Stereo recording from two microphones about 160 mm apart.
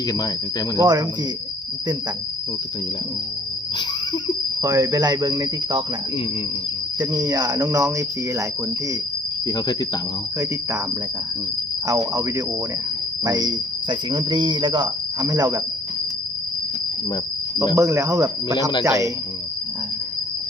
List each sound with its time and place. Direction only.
0.8 s speech: 25° right (ahead or behind)
3.8 s a sound: 30° left (ahead or behind)
4.6 s speech: 25° right (ahead or behind)
7.0 s speech: 25° right (ahead or behind)
9.5 s cricket: 25° left (ahead or behind)
11.9 s speech: 20° right (ahead or behind)
17.7 s speech: 20° right (ahead or behind)